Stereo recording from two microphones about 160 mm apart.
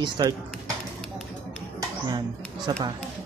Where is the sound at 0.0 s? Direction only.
25° right (ahead or behind).